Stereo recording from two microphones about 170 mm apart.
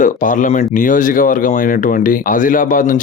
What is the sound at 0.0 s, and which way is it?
A man's voice, 50° left (ahead or behind).